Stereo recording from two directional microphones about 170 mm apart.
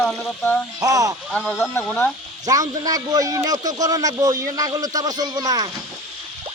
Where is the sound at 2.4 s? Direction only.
20° right (ahead or behind).